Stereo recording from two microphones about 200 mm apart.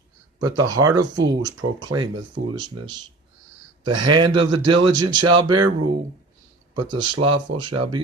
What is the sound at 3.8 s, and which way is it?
Speech, 25° right (ahead or behind).